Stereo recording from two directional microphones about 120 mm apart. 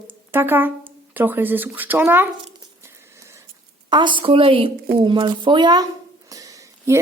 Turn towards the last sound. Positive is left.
turn(degrees=-25)  # may be behind; listen again after turning